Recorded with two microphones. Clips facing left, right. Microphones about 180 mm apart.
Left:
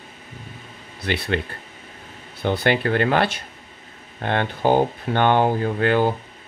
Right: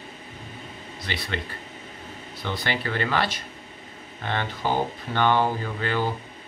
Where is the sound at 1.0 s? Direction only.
55° left (ahead or behind).